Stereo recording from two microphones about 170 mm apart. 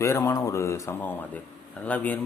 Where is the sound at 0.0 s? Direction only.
15° left (ahead or behind).